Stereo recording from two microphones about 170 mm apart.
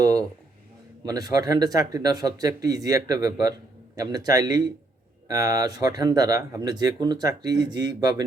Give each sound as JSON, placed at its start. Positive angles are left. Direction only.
{"t": 0.0, "sound": "speech", "side_deg": -20}